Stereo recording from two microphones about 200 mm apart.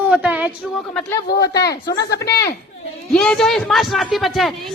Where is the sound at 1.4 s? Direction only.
55° left (ahead or behind).